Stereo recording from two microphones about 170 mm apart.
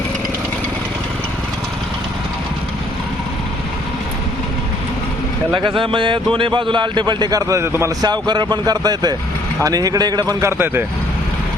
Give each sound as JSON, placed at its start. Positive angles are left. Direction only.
{"t": 5.5, "sound": "speech", "side_deg": -30}